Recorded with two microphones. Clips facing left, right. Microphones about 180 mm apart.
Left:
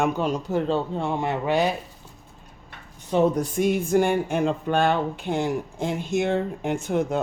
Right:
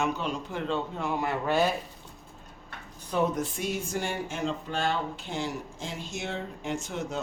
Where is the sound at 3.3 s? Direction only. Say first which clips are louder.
Left 9 dB; 50° left (ahead or behind).